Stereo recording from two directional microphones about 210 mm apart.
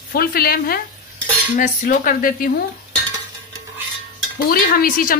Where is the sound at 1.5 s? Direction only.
40° left (ahead or behind).